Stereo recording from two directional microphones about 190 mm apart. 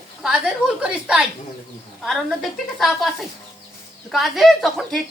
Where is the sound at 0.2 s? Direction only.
5° right (ahead or behind).